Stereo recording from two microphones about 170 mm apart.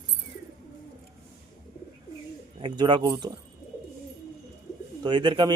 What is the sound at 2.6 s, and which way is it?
Speech, 25° right (ahead or behind).